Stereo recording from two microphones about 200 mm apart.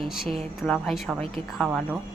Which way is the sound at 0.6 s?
5° left (ahead or behind).